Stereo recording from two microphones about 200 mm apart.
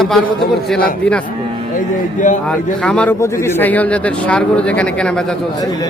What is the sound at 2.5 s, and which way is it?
A man's voice, 5° left (ahead or behind).